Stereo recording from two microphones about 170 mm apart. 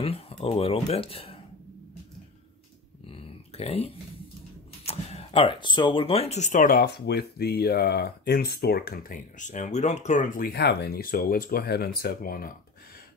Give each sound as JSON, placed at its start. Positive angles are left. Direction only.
{"t": 0.0, "sound": "speech", "side_deg": 35}
{"t": 3.1, "sound": "dog", "side_deg": 35}
{"t": 4.8, "sound": "speech", "side_deg": 35}